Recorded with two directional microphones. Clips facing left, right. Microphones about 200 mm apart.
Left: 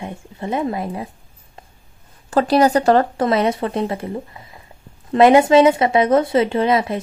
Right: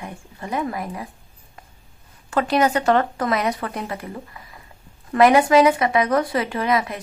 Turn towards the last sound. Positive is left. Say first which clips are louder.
# left 5 dB
turn(degrees=30)  # may be behind; listen again after turning